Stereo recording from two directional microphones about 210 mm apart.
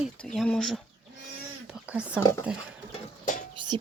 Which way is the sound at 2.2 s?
15° left (ahead or behind).